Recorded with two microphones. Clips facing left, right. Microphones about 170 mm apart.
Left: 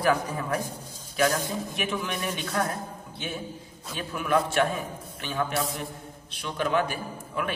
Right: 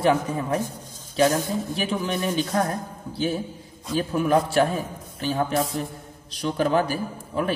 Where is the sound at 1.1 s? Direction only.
30° right (ahead or behind).